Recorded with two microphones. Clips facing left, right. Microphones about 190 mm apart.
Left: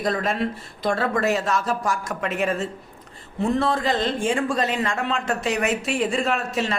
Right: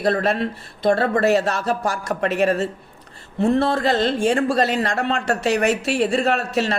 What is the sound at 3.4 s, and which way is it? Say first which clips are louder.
Speech: right 4 dB; 65° right (ahead or behind).